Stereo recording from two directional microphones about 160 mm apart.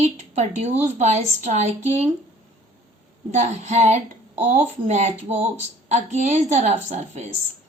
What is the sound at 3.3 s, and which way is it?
Speech, 45° right (ahead or behind).